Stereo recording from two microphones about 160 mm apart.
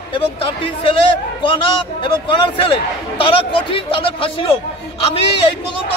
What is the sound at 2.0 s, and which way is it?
Speech, 30° left (ahead or behind).